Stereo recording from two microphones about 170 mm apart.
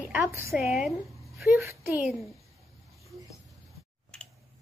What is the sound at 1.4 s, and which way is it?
Speech, 15° right (ahead or behind).